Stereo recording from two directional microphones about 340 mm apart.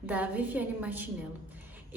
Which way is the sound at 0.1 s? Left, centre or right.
Centre.